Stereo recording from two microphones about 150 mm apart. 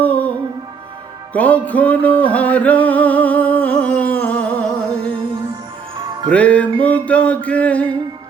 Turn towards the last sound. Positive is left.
turn(degrees=10)  # may be behind; listen again after turning